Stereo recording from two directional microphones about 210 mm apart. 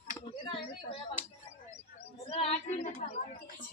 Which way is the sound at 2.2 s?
30° left (ahead or behind).